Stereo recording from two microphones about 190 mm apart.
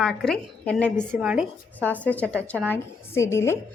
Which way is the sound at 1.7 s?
10° left (ahead or behind).